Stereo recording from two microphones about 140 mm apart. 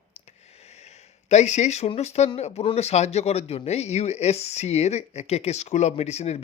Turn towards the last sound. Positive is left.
turn(degrees=50)  # may be behind; listen again after turning